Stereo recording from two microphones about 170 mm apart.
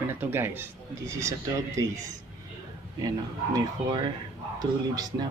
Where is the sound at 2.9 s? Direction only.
20° right (ahead or behind).